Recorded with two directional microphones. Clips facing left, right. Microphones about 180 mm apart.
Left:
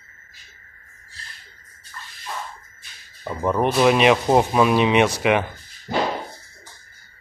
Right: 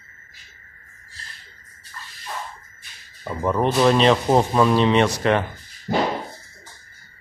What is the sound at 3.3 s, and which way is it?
Speech, 10° left (ahead or behind).